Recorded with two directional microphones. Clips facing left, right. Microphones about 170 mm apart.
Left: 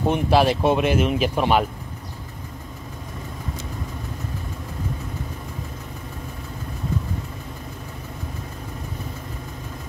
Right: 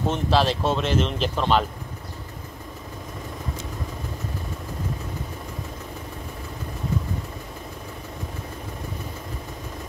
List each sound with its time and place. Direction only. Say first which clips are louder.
0.0 s speech: left 3 dB; 15° left (ahead or behind)